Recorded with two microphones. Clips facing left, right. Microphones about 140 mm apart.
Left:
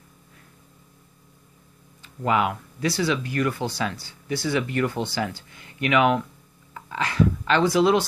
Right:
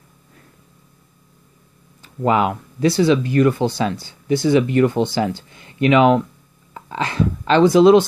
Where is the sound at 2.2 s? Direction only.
30° right (ahead or behind).